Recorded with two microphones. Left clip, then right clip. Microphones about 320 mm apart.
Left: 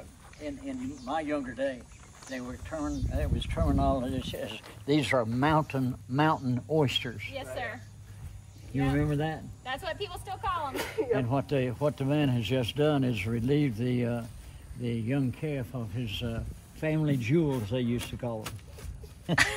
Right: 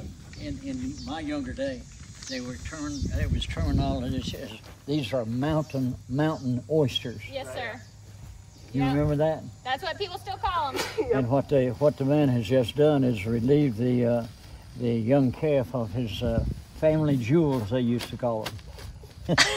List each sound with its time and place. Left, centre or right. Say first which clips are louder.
0.4 s a sound: even; centre
1.0 s speech: left 3 dB; centre
6.8 s speech: right 2 dB; centre
9.0 s speech: right 7 dB; centre
10.6 s speech: right 4 dB; right
11.2 s speech: right 6 dB; centre